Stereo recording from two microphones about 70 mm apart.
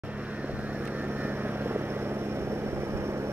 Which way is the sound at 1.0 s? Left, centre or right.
Right.